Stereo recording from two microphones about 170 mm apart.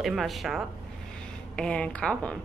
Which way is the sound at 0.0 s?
Centre (ahead or behind).